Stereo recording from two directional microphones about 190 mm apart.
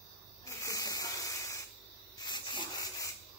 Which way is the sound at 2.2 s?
20° left (ahead or behind).